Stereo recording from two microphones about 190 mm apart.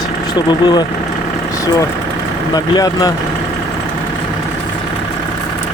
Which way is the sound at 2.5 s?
20° left (ahead or behind).